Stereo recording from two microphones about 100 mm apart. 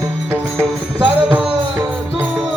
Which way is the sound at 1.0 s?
15° right (ahead or behind).